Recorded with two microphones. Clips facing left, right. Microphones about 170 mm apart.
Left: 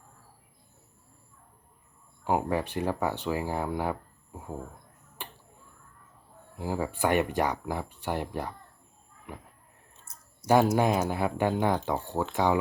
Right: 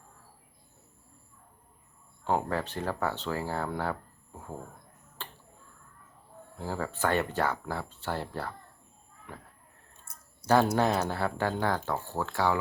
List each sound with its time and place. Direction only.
2.2 s speech: 15° left (ahead or behind)
5.2 s finger snapping: 15° left (ahead or behind)
6.6 s speech: 15° left (ahead or behind)